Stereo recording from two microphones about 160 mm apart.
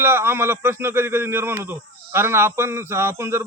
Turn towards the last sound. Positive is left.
turn(degrees=-15)  # may be behind; listen again after turning